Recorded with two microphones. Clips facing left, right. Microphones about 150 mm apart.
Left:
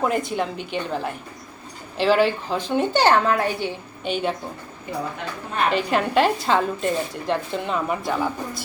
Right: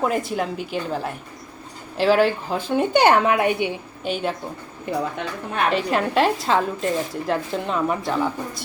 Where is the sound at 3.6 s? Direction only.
Centre (ahead or behind).